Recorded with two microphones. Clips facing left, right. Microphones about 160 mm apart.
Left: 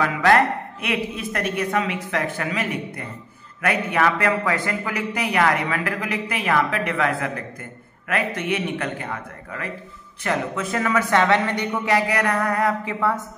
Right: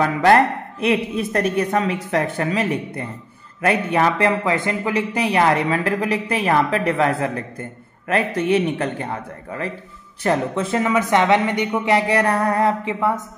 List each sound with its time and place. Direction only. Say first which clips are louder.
0.0 s a man's voice: right 3 dB; 30° right (ahead or behind)